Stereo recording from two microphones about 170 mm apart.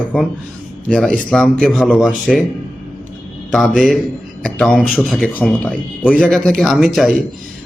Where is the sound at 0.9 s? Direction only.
5° left (ahead or behind).